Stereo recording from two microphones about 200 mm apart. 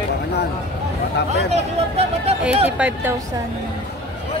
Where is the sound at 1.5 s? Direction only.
30° right (ahead or behind).